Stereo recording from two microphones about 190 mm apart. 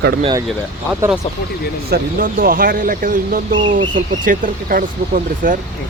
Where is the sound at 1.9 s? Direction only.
50° right (ahead or behind).